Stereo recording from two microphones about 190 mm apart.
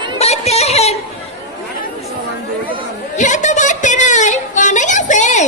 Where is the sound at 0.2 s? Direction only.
35° left (ahead or behind).